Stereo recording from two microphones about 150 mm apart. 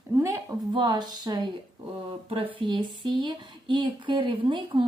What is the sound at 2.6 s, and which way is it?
Speech, 35° right (ahead or behind).